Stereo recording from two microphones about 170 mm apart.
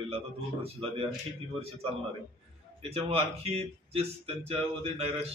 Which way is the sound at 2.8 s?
35° right (ahead or behind).